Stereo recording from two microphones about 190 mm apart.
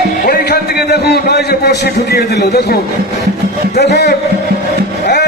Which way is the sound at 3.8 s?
60° left (ahead or behind).